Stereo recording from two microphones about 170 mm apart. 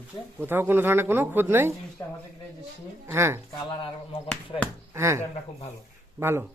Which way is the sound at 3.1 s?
15° right (ahead or behind).